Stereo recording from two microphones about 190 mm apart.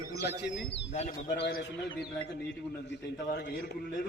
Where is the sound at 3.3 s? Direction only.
60° left (ahead or behind).